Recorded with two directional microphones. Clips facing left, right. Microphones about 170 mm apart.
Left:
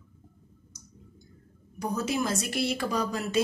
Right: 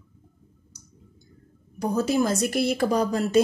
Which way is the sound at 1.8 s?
35° right (ahead or behind).